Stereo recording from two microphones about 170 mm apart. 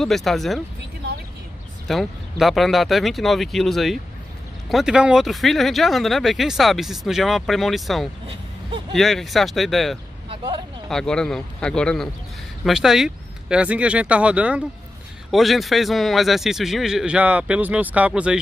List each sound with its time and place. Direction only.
0.0 s speech: centre (ahead or behind)
1.9 s speech: centre (ahead or behind)
10.3 s vehicle: 30° right (ahead or behind)
10.9 s speech: 5° left (ahead or behind)